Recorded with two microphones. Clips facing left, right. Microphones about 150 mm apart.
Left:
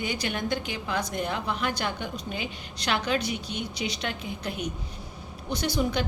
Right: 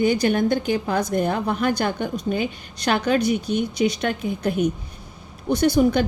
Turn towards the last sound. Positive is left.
turn(degrees=-50)  # may be behind; listen again after turning